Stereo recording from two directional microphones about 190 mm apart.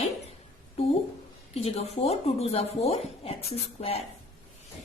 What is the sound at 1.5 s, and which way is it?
Speech, 30° left (ahead or behind).